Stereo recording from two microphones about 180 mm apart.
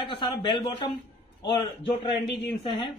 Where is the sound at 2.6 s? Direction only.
30° left (ahead or behind).